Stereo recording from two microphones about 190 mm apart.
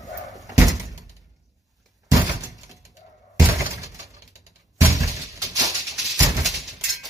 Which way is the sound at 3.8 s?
15° right (ahead or behind).